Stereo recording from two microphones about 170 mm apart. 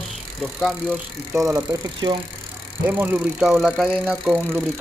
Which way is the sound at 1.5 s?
25° right (ahead or behind).